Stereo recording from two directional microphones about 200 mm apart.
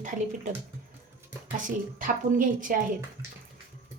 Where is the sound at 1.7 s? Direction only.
40° right (ahead or behind).